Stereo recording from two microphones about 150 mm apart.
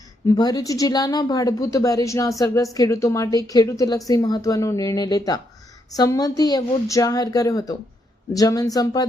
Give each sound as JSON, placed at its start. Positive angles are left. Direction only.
{"t": 0.3, "sound": "a woman's voice", "side_deg": 25}